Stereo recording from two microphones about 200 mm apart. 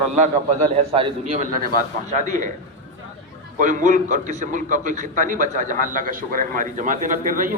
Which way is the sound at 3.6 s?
40° right (ahead or behind).